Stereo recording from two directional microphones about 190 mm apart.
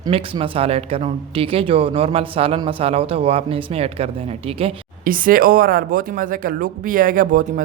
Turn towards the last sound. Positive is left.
turn(degrees=-45)  # may be behind; listen again after turning